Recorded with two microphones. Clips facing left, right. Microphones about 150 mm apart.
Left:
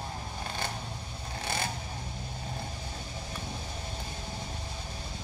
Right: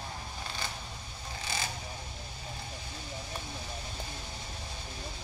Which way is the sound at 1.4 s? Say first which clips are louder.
Left 4 dB; 55° left (ahead or behind).